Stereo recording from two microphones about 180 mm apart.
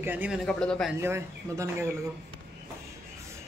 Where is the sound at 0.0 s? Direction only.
10° right (ahead or behind).